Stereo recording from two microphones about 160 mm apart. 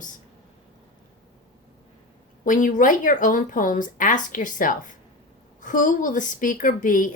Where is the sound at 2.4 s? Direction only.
55° left (ahead or behind).